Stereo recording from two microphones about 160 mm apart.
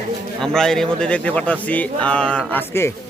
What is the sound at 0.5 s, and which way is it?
Speech, 5° left (ahead or behind).